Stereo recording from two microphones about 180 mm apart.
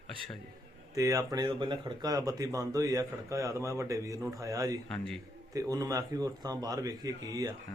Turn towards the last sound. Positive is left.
turn(degrees=-20)  # may be behind; listen again after turning